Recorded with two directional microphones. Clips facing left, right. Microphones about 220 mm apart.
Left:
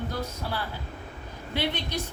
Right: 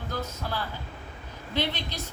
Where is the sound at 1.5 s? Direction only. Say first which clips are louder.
Even; 10° left (ahead or behind).